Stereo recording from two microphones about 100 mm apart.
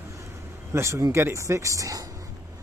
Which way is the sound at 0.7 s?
30° right (ahead or behind).